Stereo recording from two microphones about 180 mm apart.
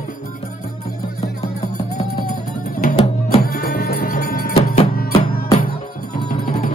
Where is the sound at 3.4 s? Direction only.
60° left (ahead or behind).